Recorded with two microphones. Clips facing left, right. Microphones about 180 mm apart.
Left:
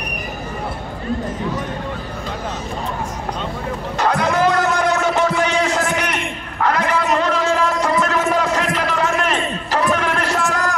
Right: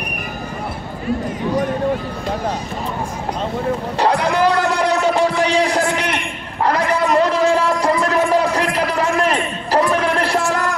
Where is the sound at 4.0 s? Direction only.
30° right (ahead or behind).